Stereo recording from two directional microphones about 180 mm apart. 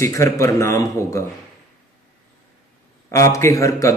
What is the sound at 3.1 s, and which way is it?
Speech, 15° left (ahead or behind).